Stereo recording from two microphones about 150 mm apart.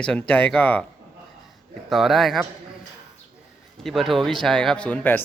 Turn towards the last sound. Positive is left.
turn(degrees=10)  # may be behind; listen again after turning